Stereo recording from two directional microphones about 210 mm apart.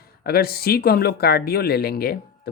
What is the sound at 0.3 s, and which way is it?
Speech, 45° left (ahead or behind).